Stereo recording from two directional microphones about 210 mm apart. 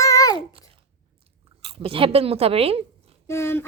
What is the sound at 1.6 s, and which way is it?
A woman's voice, 25° right (ahead or behind).